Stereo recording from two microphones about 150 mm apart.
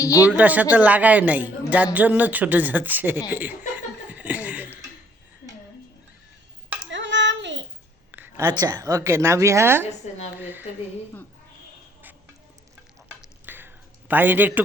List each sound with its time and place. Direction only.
0.0 s speech: 20° left (ahead or behind)
0.3 s a man's voice: 10° right (ahead or behind)
4.1 s chuckle: 10° right (ahead or behind)
8.1 s a sound: 15° right (ahead or behind)
8.4 s a woman's voice: 25° right (ahead or behind)
13.1 s a sound: 15° right (ahead or behind)